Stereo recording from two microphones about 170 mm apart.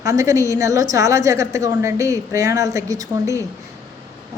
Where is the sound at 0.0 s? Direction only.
20° right (ahead or behind).